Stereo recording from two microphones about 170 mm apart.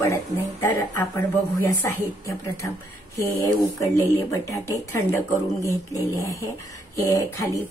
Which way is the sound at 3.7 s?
20° left (ahead or behind).